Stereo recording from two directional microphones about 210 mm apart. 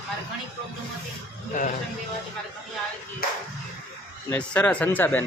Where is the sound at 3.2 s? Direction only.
45° left (ahead or behind).